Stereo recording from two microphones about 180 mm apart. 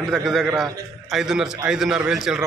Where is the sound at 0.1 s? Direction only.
Centre (ahead or behind).